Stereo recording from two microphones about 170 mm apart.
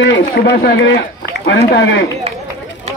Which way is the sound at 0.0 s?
85° left.